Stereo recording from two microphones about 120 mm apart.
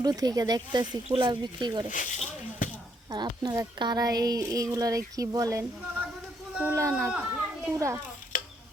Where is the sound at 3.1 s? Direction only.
35° right (ahead or behind).